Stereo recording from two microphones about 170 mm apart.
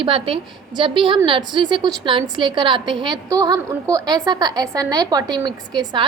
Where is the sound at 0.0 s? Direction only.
30° right (ahead or behind).